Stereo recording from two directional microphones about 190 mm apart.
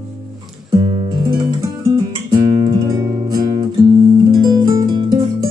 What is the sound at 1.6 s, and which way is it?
Guitar, 20° right (ahead or behind).